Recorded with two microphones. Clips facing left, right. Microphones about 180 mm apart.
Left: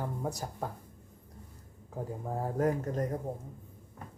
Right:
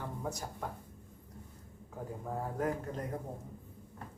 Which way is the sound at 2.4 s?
40° left (ahead or behind).